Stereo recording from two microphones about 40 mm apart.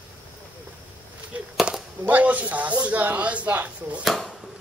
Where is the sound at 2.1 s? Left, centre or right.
Right.